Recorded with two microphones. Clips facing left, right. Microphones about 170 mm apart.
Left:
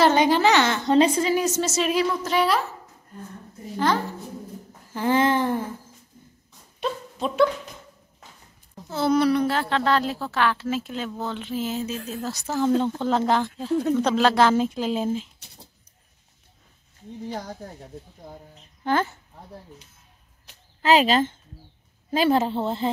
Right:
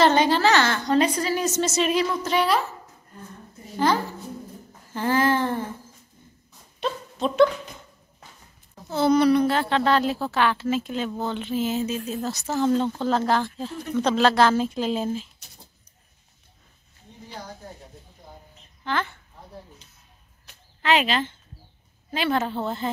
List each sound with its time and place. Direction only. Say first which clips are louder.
0.0 s a woman's voice: left 1 dB; 15° left (ahead or behind)
1.3 s speech: left 1 dB; 10° left (ahead or behind)
3.7 s speech: right 1 dB; centre (ahead or behind)
4.9 s a woman's voice: left 1 dB; 15° left (ahead or behind)
6.8 s a sound: right 1 dB; 5° left (ahead or behind)
8.9 s a woman's voice: right 2 dB; centre (ahead or behind)
13.7 s speech: left 11 dB; 60° left (ahead or behind)
13.9 s a woman's voice: right 3 dB; 10° left (ahead or behind)
18.9 s speech: left 4 dB; 40° left (ahead or behind)
20.8 s speech: left 4 dB; 35° left (ahead or behind)
22.4 s speech: left 3 dB; 25° left (ahead or behind)